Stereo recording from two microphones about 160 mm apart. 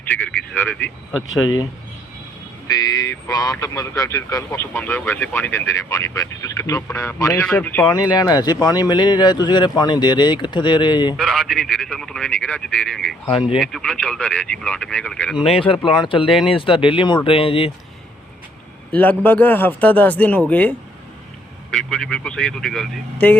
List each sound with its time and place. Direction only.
0.1 s a man's voice: 10° left (ahead or behind)
2.6 s a man's voice: 20° left (ahead or behind)
8.1 s speech: 25° left (ahead or behind)
11.2 s a man's voice: centre (ahead or behind)
15.6 s speech: 30° left (ahead or behind)
18.9 s a man's voice: 10° left (ahead or behind)